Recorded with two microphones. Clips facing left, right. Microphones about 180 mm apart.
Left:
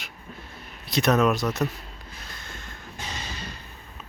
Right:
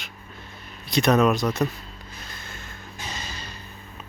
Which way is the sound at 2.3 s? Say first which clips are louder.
Right 1 dB; 5° right (ahead or behind).